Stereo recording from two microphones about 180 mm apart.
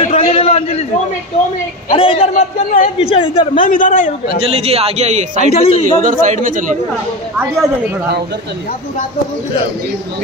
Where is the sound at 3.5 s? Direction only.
50° left (ahead or behind).